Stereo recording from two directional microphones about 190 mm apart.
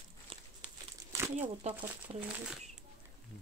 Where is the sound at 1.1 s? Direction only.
15° right (ahead or behind).